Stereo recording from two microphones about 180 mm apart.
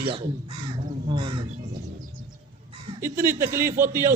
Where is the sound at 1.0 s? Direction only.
30° right (ahead or behind).